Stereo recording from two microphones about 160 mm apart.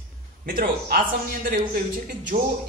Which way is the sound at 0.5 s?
60° right (ahead or behind).